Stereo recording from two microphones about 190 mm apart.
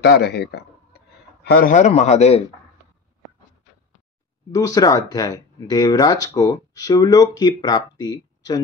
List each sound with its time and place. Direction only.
0.0 s a sound: 60° left (ahead or behind)
1.7 s a man's voice: 40° left (ahead or behind)
4.5 s speech: 20° left (ahead or behind)